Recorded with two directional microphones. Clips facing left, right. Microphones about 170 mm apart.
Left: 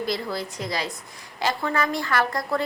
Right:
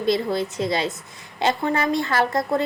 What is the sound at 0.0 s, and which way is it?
A woman's voice, 25° right (ahead or behind).